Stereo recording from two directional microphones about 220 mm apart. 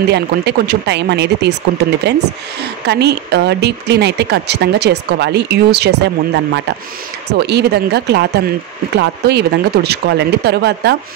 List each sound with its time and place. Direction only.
0.1 s speech: 50° right (ahead or behind)